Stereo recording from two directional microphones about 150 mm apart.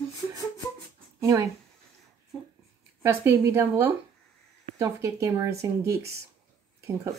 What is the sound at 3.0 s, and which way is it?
Speech, 20° right (ahead or behind).